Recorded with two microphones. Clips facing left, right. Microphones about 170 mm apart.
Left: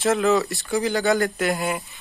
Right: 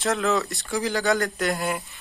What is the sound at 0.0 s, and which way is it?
Speech, centre (ahead or behind).